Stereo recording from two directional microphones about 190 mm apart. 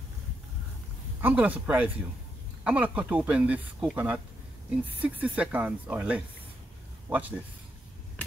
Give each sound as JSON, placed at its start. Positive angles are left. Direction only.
{"t": 1.2, "sound": "speech", "side_deg": -10}